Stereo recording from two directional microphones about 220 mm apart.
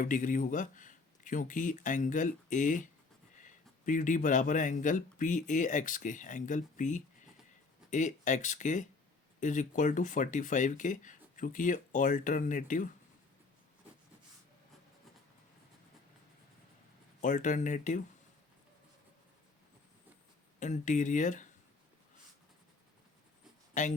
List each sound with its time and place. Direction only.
0.0 s speech: 35° left (ahead or behind)
17.2 s speech: 35° left (ahead or behind)
20.6 s speech: 35° left (ahead or behind)
23.8 s speech: 35° left (ahead or behind)